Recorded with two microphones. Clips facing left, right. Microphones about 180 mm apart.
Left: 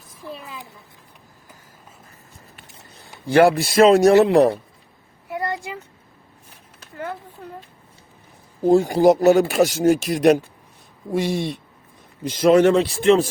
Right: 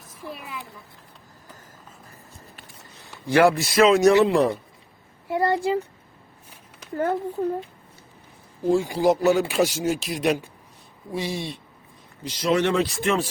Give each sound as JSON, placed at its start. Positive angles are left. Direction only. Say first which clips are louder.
{"t": 3.2, "sound": "speech", "louder": "left 3 dB", "side_deg": 30}
{"t": 3.6, "sound": "speech", "louder": "left 4 dB", "side_deg": 50}
{"t": 3.8, "sound": "speech", "louder": "left 3 dB", "side_deg": 35}
{"t": 4.1, "sound": "speech", "louder": "left 4 dB", "side_deg": 50}
{"t": 5.3, "sound": "a sound", "louder": "right 6 dB", "side_deg": -30}
{"t": 6.9, "sound": "speech", "louder": "right 7 dB", "side_deg": -45}
{"t": 8.6, "sound": "speech", "louder": "left 6 dB", "side_deg": 45}
{"t": 12.8, "sound": "speech", "louder": "left 7 dB", "side_deg": 30}